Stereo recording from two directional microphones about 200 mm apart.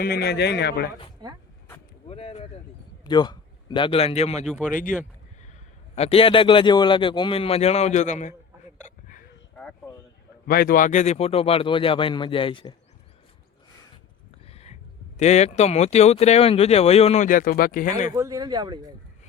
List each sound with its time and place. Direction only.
0.0 s speech: 50° left (ahead or behind)
2.0 s a sound: 30° left (ahead or behind)
3.0 s a man's voice: 20° left (ahead or behind)
5.9 s a man's voice: 30° left (ahead or behind)
8.8 s a sound: 40° left (ahead or behind)
10.4 s a man's voice: 50° left (ahead or behind); by 12.7 s 25° left (ahead or behind)
14.4 s a sound: 30° left (ahead or behind)
15.2 s speech: 35° left (ahead or behind)
18.1 s speech: 20° right (ahead or behind)